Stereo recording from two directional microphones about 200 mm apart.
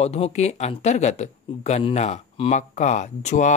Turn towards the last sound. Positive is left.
turn(degrees=35)  # may be behind; listen again after turning